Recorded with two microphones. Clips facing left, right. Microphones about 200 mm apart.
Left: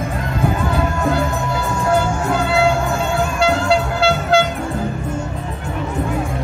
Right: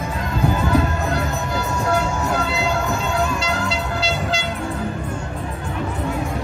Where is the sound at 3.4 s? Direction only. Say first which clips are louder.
Left 8 dB; 55° left (ahead or behind).